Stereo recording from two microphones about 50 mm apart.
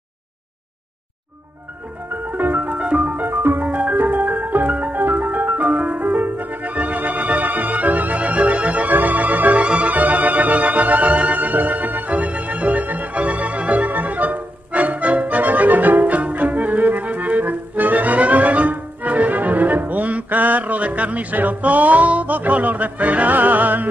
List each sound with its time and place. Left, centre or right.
2.3 s music: right
2.8 s music: right
3.3 s music: right
3.6 s music: right
5.0 s music: right